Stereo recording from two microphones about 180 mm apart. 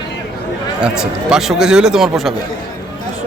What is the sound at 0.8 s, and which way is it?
Speech, 5° right (ahead or behind).